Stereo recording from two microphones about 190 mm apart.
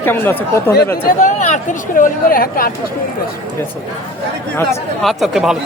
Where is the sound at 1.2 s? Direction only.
40° left (ahead or behind).